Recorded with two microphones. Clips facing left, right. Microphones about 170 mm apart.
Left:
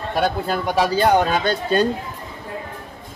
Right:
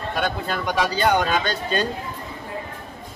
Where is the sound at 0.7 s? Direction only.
35° left (ahead or behind).